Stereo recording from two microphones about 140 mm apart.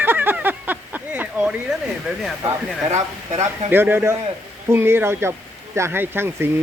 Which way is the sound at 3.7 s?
15° right (ahead or behind).